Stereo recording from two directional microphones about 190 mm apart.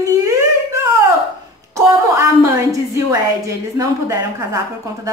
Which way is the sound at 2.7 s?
15° right (ahead or behind).